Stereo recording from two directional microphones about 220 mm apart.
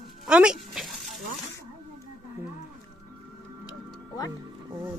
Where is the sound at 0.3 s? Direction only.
5° right (ahead or behind).